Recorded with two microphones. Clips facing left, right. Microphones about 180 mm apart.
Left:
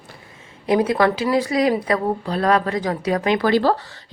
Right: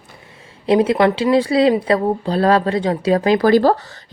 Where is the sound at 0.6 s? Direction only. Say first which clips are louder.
Right 3 dB; 25° right (ahead or behind).